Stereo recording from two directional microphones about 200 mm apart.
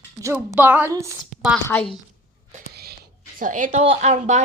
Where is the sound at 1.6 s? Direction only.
10° left (ahead or behind).